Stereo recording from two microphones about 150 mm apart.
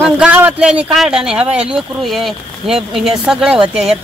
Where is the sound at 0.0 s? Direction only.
10° right (ahead or behind).